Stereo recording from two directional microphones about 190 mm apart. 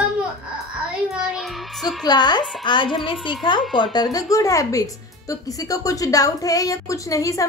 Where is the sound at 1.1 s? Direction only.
Centre (ahead or behind).